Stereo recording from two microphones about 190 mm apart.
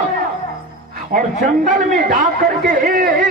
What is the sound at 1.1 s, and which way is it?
A man's voice, 45° right (ahead or behind).